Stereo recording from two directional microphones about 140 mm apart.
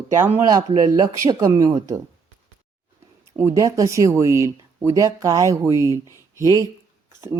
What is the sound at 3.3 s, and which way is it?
Speech, 20° right (ahead or behind).